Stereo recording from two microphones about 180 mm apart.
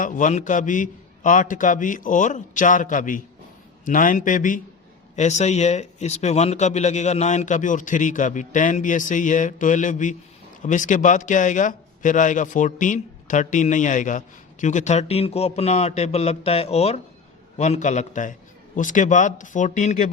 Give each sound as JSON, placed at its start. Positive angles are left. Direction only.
{"t": 0.0, "sound": "a man's voice", "side_deg": 45}